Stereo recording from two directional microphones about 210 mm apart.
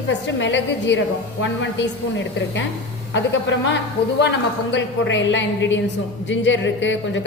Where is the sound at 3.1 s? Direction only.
60° left (ahead or behind).